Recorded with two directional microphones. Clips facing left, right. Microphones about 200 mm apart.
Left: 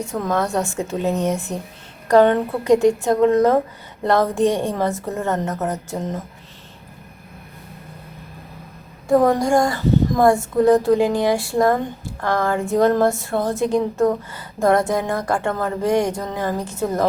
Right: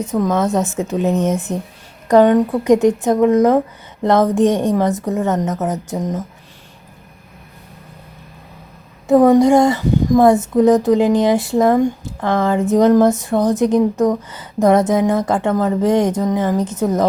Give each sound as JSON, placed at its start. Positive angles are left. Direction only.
{"t": 0.3, "sound": "a woman's voice", "side_deg": -20}
{"t": 9.0, "sound": "a woman's voice", "side_deg": -20}